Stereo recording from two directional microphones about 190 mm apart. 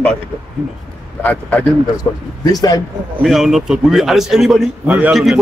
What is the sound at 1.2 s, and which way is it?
Speech, 10° left (ahead or behind).